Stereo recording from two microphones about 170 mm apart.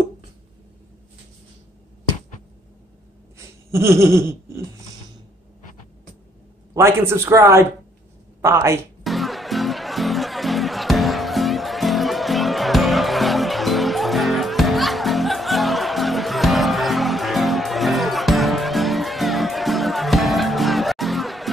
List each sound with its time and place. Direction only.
3.3 s a sound: 15° right (ahead or behind)
6.7 s a man's voice: 15° right (ahead or behind)
9.0 s music: centre (ahead or behind)